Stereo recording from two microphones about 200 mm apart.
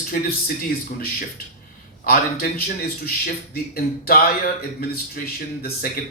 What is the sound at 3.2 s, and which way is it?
A man's voice, 50° left (ahead or behind).